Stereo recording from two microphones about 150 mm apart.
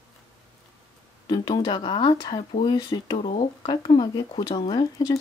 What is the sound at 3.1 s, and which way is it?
Speech, 45° left (ahead or behind).